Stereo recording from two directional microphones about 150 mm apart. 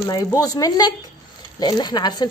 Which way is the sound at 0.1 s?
25° left (ahead or behind).